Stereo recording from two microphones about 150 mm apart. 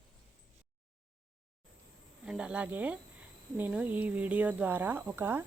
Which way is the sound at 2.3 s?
5° right (ahead or behind).